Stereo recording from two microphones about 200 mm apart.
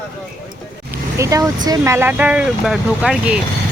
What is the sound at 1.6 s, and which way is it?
Speech, 15° right (ahead or behind).